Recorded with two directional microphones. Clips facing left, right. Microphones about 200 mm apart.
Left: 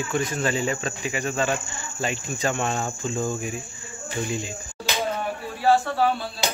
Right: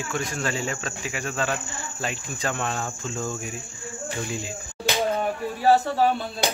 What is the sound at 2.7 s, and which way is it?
Cricket, 10° left (ahead or behind).